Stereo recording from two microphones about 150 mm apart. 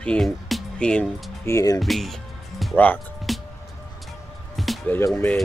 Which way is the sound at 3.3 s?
Centre (ahead or behind).